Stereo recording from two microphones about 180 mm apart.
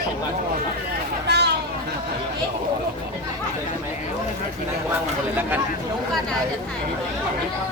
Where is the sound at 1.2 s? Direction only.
65° right (ahead or behind).